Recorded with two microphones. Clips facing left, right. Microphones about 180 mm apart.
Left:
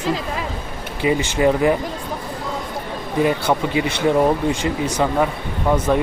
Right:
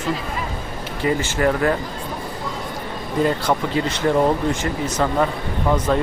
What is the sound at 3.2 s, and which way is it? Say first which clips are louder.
Speech: left 1 dB; 10° left (ahead or behind).